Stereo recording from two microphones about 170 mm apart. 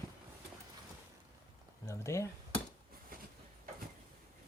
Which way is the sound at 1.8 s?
15° left (ahead or behind).